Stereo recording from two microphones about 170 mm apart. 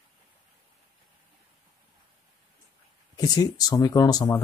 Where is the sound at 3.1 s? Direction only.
20° left (ahead or behind).